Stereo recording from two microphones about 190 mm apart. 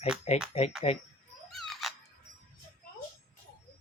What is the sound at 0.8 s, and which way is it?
Speech, 30° left (ahead or behind).